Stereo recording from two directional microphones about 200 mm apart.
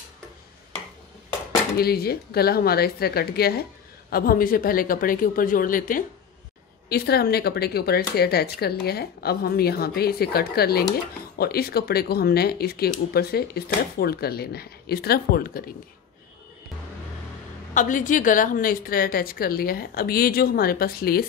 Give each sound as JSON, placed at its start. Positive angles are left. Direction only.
{"t": 1.8, "sound": "speech", "side_deg": 50}
{"t": 17.7, "sound": "speech", "side_deg": 40}